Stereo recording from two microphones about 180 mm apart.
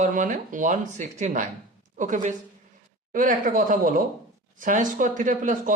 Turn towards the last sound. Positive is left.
turn(degrees=-45)  # may be behind; listen again after turning